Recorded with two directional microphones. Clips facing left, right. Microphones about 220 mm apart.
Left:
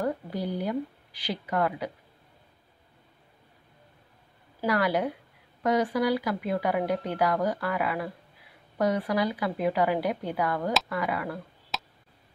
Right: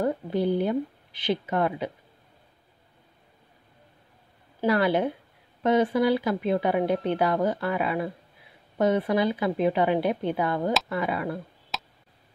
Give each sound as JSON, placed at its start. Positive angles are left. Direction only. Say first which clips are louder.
{"t": 0.0, "sound": "speech", "louder": "right 5 dB", "side_deg": -25}
{"t": 4.6, "sound": "speech", "louder": "right 3 dB", "side_deg": -25}
{"t": 11.7, "sound": "a sound", "louder": "even", "side_deg": 0}